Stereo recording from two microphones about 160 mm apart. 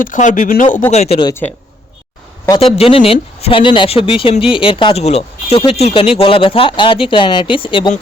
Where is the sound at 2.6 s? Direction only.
35° left (ahead or behind).